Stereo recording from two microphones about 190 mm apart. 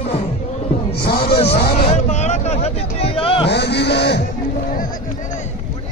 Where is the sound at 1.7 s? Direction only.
35° left (ahead or behind).